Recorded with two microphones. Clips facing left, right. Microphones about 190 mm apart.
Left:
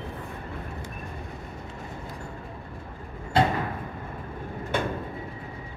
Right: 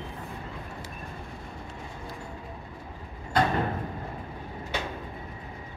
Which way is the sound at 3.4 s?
25° left (ahead or behind).